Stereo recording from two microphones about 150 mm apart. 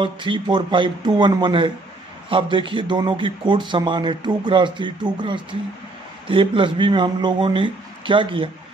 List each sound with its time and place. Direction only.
0.0 s a man's voice: 35° right (ahead or behind)